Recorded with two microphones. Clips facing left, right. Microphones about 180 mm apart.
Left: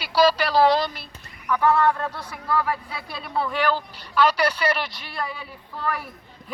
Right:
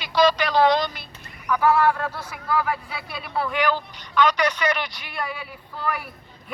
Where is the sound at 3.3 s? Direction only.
30° left (ahead or behind).